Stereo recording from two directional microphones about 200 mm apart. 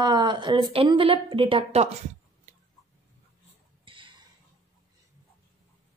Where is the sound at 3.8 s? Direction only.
25° right (ahead or behind).